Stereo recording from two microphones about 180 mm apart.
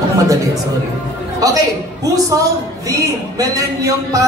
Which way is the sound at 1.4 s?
20° right (ahead or behind).